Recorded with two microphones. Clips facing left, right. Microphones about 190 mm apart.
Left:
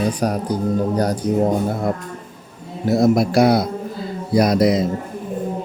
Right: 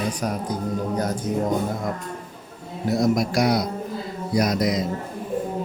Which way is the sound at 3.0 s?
30° left (ahead or behind).